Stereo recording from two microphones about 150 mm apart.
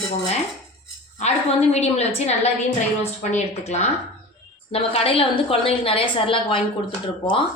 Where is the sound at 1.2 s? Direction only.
45° left (ahead or behind).